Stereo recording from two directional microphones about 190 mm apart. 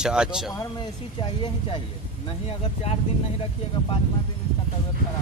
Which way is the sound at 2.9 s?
35° left (ahead or behind).